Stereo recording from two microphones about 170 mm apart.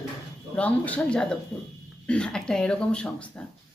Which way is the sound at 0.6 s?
10° left (ahead or behind).